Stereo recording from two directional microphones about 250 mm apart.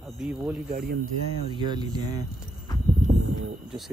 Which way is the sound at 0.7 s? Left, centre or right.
Right.